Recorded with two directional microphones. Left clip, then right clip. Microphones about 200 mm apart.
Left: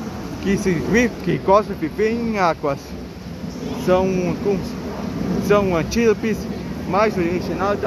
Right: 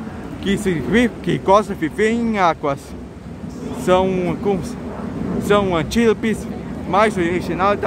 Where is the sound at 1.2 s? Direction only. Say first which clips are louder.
Right 2 dB; 30° right (ahead or behind).